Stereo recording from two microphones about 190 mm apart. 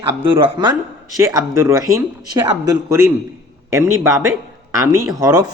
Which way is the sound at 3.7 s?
15° right (ahead or behind).